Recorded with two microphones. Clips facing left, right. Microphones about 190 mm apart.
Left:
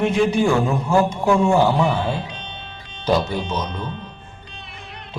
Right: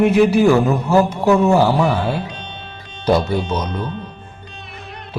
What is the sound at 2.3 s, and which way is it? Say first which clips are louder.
Music: right 3 dB; 45° right (ahead or behind).